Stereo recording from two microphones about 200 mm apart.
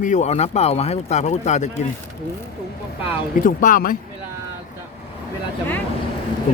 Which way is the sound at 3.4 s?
45° left (ahead or behind).